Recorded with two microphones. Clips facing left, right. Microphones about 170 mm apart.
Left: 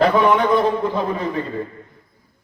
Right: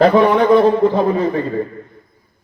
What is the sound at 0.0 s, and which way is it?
A man's voice, 35° right (ahead or behind).